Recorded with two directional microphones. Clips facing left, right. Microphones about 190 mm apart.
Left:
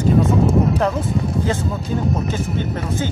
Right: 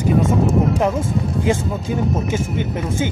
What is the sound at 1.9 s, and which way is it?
Speech, 15° right (ahead or behind).